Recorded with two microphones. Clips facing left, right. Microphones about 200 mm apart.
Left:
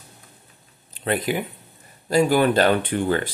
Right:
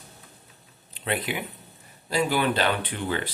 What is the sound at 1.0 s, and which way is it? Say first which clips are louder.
Speech: left 6 dB; 45° left (ahead or behind).